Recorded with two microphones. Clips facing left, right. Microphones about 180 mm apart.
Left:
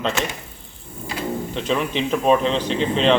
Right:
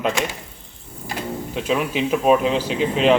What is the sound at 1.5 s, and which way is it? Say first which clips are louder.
A man's voice: right 2 dB; 5° right (ahead or behind).